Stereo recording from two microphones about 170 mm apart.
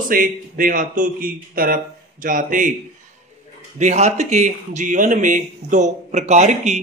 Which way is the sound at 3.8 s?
45° right (ahead or behind).